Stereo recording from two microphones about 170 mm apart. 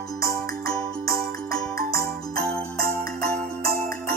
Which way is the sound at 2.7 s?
60° right (ahead or behind).